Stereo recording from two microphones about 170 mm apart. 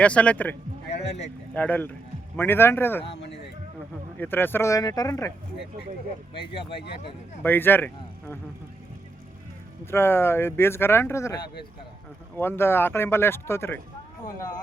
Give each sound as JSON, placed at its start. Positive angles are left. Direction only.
{"t": 0.0, "sound": "speech", "side_deg": 5}
{"t": 0.9, "sound": "speech", "side_deg": 40}
{"t": 1.5, "sound": "speech", "side_deg": 10}
{"t": 3.0, "sound": "speech", "side_deg": 35}
{"t": 4.2, "sound": "speech", "side_deg": 10}
{"t": 7.4, "sound": "speech", "side_deg": 10}
{"t": 9.8, "sound": "speech", "side_deg": 15}
{"t": 12.4, "sound": "speech", "side_deg": 15}